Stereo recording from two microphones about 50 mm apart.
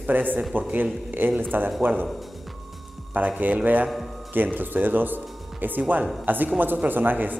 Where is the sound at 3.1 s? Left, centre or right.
Right.